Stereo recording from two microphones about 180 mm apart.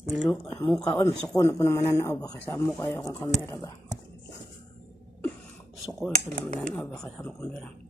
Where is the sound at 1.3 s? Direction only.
15° left (ahead or behind).